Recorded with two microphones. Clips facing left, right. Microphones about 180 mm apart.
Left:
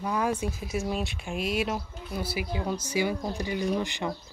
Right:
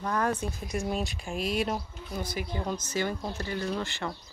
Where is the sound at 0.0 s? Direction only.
10° left (ahead or behind).